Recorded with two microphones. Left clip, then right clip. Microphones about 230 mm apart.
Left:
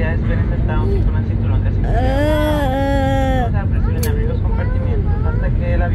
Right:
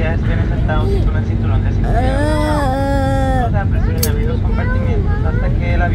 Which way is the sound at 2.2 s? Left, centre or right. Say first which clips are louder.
Left 3 dB; centre.